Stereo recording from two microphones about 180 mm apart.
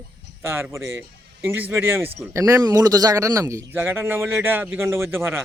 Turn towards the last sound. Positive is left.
turn(degrees=-10)  # may be behind; listen again after turning